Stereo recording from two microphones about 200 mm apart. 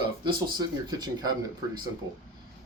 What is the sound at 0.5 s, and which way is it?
Speech, 20° right (ahead or behind).